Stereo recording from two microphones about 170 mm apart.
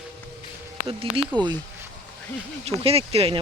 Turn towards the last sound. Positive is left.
turn(degrees=-35)  # may be behind; listen again after turning